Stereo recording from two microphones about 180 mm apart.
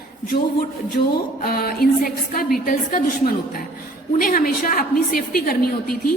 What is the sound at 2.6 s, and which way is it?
Speech, 55° left (ahead or behind).